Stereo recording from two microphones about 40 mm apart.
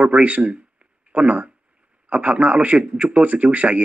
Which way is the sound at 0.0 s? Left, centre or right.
Right.